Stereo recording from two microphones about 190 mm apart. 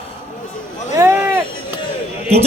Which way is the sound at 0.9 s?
10° right (ahead or behind).